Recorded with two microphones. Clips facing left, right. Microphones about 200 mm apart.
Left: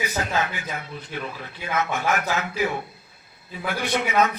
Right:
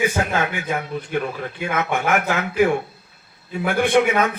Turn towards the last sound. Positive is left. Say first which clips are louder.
# right 5 dB
turn(degrees=-50)  # may be behind; listen again after turning